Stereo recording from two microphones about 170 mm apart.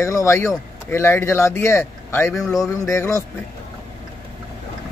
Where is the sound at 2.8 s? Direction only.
15° left (ahead or behind).